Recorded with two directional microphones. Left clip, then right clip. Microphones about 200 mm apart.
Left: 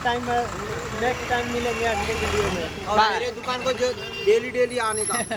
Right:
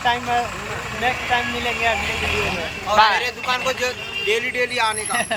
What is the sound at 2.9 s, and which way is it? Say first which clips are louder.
Speech: right 5 dB; centre (ahead or behind).